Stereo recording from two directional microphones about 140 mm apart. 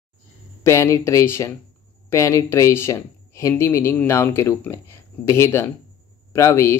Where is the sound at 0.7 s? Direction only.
20° left (ahead or behind).